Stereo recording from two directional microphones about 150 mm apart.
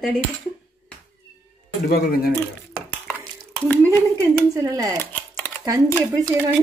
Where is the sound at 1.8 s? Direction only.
90° left.